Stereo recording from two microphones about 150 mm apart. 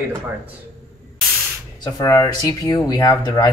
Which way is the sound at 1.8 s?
20° left (ahead or behind).